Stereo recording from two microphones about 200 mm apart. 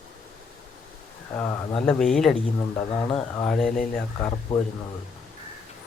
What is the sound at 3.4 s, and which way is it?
Speech, 5° left (ahead or behind).